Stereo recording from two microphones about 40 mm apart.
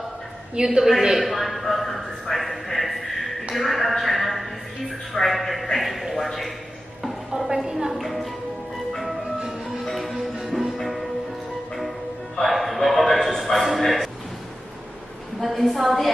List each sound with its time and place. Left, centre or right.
0.6 s a woman's voice: right
1.0 s a sound: centre
7.0 s music: centre
7.9 s music: centre
9.8 s music: centre
12.4 s music: centre
15.4 s a woman's voice: centre